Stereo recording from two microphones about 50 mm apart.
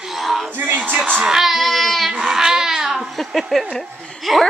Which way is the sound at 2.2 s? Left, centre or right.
Centre.